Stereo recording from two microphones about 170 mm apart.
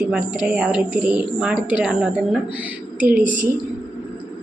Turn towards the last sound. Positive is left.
turn(degrees=-50)  # may be behind; listen again after turning